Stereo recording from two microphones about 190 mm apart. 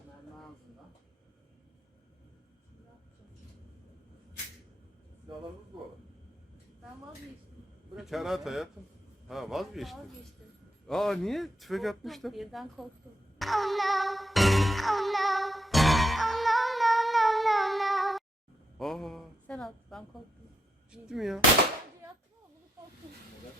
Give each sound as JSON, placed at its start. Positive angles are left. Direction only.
{"t": 7.9, "sound": "speech", "side_deg": 0}
{"t": 13.4, "sound": "music", "side_deg": 0}
{"t": 18.8, "sound": "a sound", "side_deg": 0}
{"t": 20.9, "sound": "speech", "side_deg": 0}